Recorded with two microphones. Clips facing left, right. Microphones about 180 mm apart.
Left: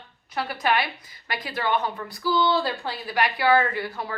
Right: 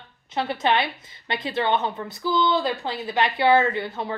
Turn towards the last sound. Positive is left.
turn(degrees=-25)  # may be behind; listen again after turning